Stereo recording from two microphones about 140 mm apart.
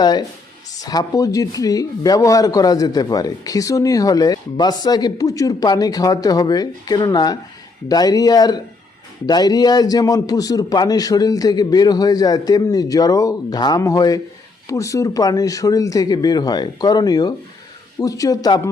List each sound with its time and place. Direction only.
0.0 s speech: 30° left (ahead or behind)